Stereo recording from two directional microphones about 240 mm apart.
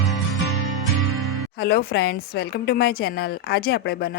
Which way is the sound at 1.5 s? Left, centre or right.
Left.